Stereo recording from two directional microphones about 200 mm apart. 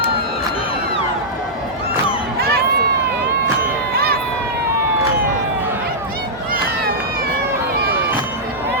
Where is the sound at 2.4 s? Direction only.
50° right (ahead or behind).